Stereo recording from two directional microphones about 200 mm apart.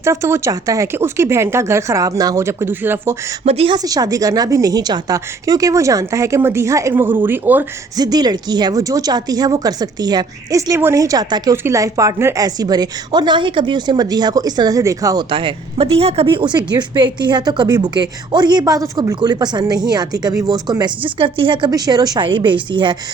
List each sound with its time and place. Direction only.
0.0 s speech: 15° right (ahead or behind)
3.4 s a woman's voice: 30° right (ahead or behind)
3.8 s a woman's voice: 20° right (ahead or behind)